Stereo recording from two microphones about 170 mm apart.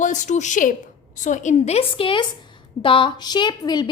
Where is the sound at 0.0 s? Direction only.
45° left (ahead or behind).